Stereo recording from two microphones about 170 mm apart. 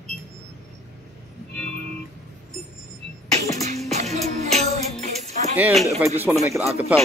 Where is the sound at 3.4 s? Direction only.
20° left (ahead or behind).